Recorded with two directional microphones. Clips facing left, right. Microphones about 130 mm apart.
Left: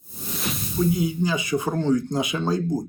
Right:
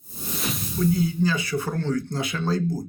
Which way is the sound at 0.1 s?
Centre (ahead or behind).